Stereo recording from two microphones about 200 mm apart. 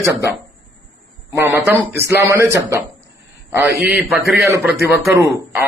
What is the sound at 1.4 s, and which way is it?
A man's voice, 10° right (ahead or behind).